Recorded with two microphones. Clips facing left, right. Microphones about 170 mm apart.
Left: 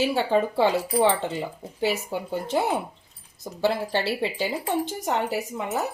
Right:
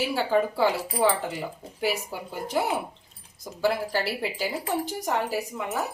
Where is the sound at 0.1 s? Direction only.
25° left (ahead or behind).